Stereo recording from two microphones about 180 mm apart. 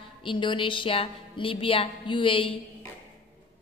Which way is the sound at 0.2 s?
25° left (ahead or behind).